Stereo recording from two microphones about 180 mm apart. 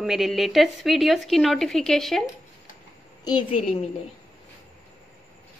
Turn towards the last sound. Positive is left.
turn(degrees=25)  # may be behind; listen again after turning